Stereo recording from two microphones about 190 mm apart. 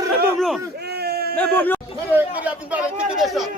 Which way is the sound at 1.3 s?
10° left (ahead or behind).